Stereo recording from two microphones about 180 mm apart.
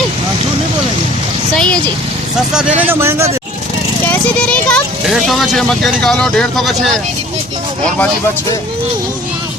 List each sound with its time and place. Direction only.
1.5 s vehicle: 5° left (ahead or behind)
2.5 s speech: 5° right (ahead or behind)
4.0 s speech: 10° left (ahead or behind)